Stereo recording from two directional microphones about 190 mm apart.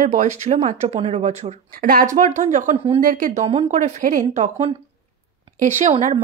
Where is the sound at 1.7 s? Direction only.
50° right (ahead or behind).